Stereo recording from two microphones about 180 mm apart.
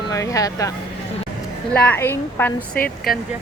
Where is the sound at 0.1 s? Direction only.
20° left (ahead or behind).